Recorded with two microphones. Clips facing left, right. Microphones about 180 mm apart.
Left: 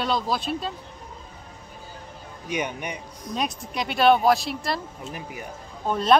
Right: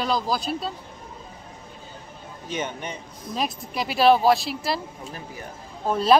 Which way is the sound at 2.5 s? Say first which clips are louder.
Left 1 dB; 15° left (ahead or behind).